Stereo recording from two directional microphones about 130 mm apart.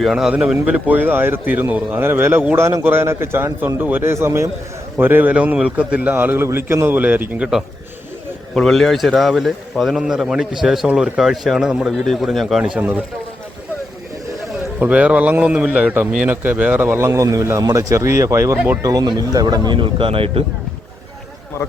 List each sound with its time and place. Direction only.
0.0 s speech: 5° right (ahead or behind)
8.5 s a man's voice: 5° left (ahead or behind)
14.8 s speech: 10° right (ahead or behind); by 20.4 s 45° right (ahead or behind)